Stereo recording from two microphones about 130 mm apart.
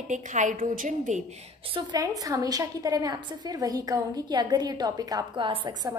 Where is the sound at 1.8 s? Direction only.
30° right (ahead or behind).